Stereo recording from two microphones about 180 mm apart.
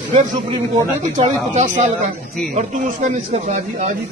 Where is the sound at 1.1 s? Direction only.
40° right (ahead or behind).